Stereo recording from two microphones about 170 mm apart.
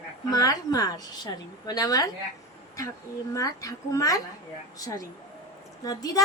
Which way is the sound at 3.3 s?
20° left (ahead or behind).